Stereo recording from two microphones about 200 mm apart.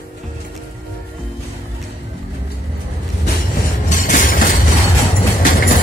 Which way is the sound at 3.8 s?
40° left (ahead or behind).